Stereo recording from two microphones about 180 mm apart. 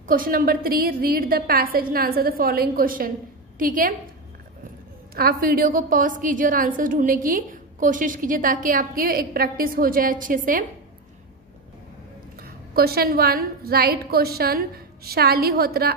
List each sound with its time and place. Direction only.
0.0 s a woman's voice: 50° right (ahead or behind)
5.1 s a woman's voice: 55° right (ahead or behind)
12.4 s a woman's voice: 55° right (ahead or behind)